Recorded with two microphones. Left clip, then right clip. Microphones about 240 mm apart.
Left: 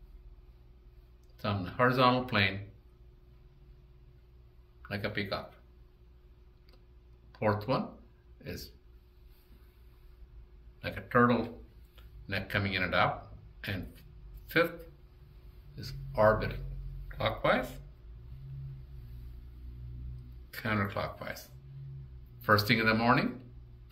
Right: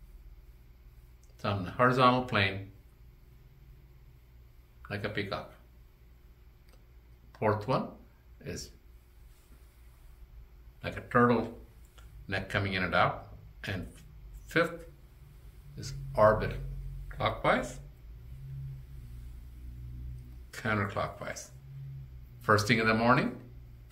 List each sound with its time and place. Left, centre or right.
1.4 s speech: centre
4.8 s speech: centre
7.3 s speech: centre
10.8 s speech: centre
13.6 s a sound: centre
15.7 s speech: centre
20.5 s speech: centre